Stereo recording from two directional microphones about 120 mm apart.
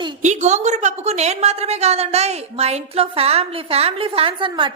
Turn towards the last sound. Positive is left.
turn(degrees=-45)  # may be behind; listen again after turning